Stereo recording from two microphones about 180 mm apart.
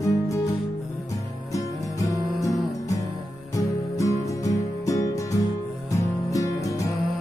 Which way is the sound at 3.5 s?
15° left (ahead or behind).